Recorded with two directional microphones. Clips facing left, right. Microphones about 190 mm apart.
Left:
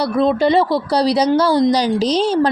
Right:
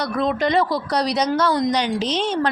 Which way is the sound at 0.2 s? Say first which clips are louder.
Left 5 dB; 30° left (ahead or behind).